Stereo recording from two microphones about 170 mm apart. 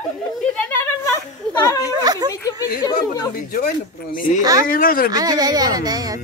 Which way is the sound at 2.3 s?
20° left (ahead or behind).